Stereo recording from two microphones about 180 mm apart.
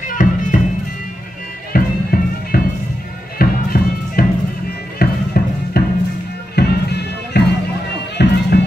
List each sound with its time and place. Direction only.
0.1 s music: 45° left (ahead or behind)
1.7 s music: 55° left (ahead or behind)